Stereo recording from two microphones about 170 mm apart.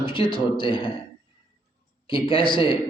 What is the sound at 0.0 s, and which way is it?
Speech, 30° left (ahead or behind).